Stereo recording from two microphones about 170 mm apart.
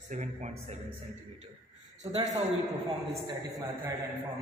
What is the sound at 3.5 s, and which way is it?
Speech, 10° right (ahead or behind).